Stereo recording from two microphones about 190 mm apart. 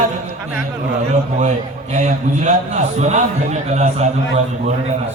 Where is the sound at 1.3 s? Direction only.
40° right (ahead or behind).